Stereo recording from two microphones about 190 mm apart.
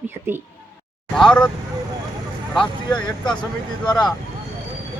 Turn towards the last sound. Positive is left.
turn(degrees=20)  # may be behind; listen again after turning